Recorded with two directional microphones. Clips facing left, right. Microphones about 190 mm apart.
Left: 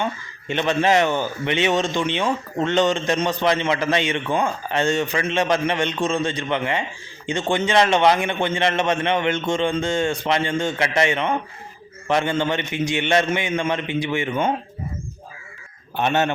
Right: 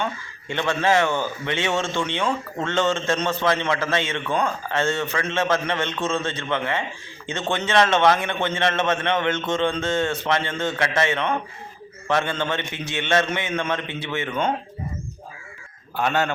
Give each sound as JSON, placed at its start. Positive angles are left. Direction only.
{"t": 0.0, "sound": "a man's voice", "side_deg": 20}
{"t": 16.0, "sound": "speech", "side_deg": 20}